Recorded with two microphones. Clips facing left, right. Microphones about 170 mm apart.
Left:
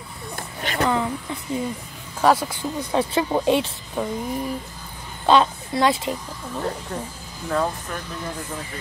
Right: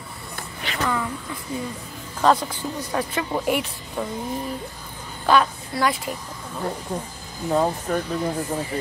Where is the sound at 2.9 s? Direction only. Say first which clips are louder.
Left 5 dB; 25° left (ahead or behind).